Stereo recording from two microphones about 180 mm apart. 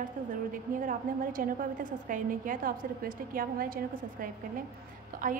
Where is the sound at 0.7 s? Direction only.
50° right (ahead or behind).